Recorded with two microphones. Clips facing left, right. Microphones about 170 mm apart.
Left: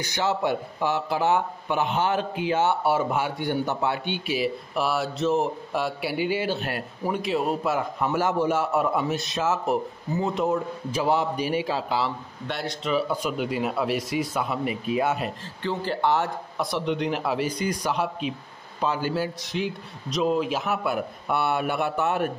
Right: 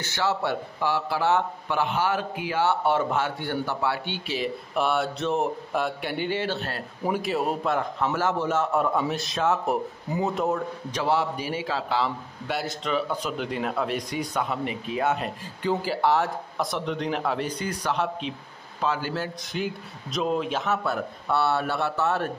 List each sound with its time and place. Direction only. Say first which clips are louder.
0.0 s a man's voice: left 1 dB; 15° left (ahead or behind)
2.8 s a man's voice: even; 10° left (ahead or behind)
7.1 s a man's voice: even; centre (ahead or behind); by 12.1 s 15° left (ahead or behind)
12.4 s a man's voice: even; 5° right (ahead or behind)
15.6 s a man's voice: right 1 dB; 10° right (ahead or behind); by 19.3 s 15° left (ahead or behind)
19.4 s a man's voice: left 1 dB; centre (ahead or behind); by 22.3 s 15° left (ahead or behind)